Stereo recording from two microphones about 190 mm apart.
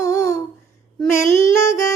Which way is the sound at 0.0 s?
15° left (ahead or behind).